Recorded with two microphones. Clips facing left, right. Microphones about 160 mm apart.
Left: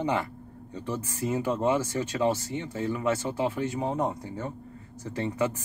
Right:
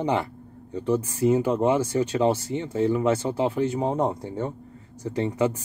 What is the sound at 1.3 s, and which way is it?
Speech, 25° right (ahead or behind).